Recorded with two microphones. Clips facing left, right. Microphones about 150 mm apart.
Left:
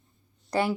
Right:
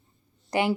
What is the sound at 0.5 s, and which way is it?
Speech, 15° right (ahead or behind).